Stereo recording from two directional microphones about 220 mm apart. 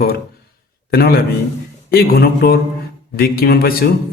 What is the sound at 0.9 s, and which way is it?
A man's voice, 45° left (ahead or behind).